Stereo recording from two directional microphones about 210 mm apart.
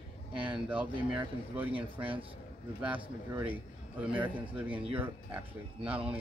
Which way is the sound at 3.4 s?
5° right (ahead or behind).